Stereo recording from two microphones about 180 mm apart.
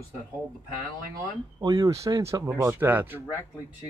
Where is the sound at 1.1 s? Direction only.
20° right (ahead or behind).